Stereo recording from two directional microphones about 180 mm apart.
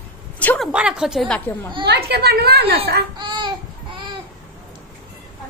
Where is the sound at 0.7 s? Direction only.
5° right (ahead or behind).